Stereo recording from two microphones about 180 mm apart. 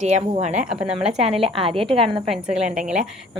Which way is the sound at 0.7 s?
5° right (ahead or behind).